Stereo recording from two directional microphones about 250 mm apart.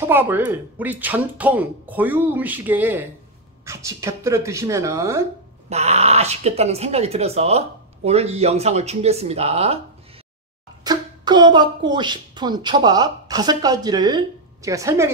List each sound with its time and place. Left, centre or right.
0.0 s speech: centre
5.7 s speech: right
10.8 s a woman's voice: centre